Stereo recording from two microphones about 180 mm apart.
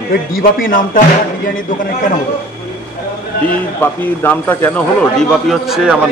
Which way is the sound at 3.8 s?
10° left (ahead or behind).